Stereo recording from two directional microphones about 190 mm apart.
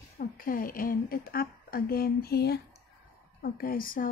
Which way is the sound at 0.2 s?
50° left (ahead or behind).